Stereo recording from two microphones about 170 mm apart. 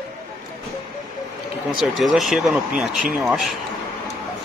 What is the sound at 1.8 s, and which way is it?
Speech, centre (ahead or behind).